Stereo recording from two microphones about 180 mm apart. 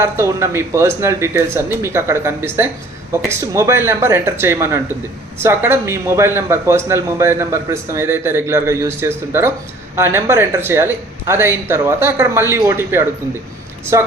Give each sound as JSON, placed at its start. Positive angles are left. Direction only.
{"t": 0.0, "sound": "speech", "side_deg": -15}